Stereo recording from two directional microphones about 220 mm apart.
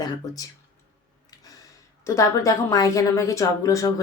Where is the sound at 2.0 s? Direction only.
15° left (ahead or behind).